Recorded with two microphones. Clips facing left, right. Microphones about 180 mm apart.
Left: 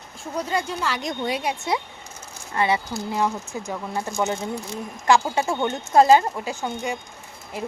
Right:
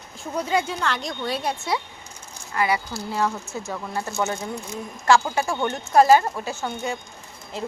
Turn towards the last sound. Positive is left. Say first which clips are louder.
# even
turn(degrees=15)  # may be behind; listen again after turning